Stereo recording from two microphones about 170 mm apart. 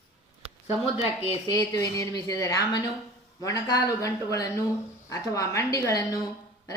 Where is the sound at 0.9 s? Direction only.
40° left (ahead or behind).